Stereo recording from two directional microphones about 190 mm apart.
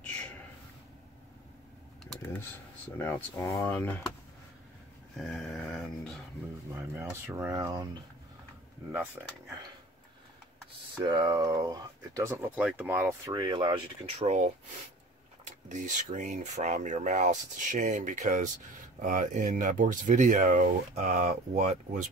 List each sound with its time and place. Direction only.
0.0 s a sound: 10° left (ahead or behind)
3.0 s speech: 5° left (ahead or behind)
5.1 s a sound: centre (ahead or behind)
6.7 s speech: 15° right (ahead or behind)
9.2 s speech: 10° right (ahead or behind)
11.0 s speech: 20° right (ahead or behind)
13.3 s speech: 25° right (ahead or behind)